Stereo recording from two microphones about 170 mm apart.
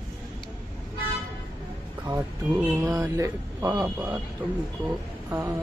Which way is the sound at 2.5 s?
15° right (ahead or behind).